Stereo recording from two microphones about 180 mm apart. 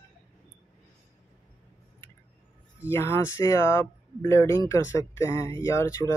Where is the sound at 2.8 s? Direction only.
15° left (ahead or behind).